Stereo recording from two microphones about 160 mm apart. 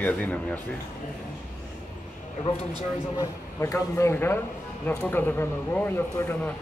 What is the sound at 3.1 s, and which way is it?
Speech, 20° left (ahead or behind).